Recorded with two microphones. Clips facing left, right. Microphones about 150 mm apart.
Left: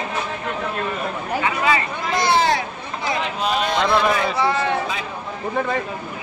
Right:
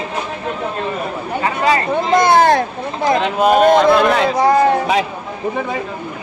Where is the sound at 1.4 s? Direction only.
40° right (ahead or behind).